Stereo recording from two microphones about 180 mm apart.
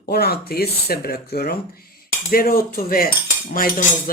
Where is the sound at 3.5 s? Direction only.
50° left (ahead or behind).